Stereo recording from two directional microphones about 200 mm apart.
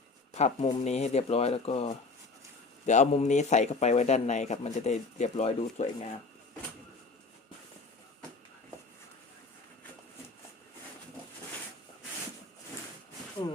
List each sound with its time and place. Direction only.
0.3 s a man's voice: 35° left (ahead or behind)